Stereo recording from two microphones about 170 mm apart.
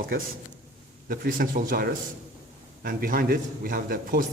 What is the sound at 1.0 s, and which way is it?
A man's voice, 55° right (ahead or behind).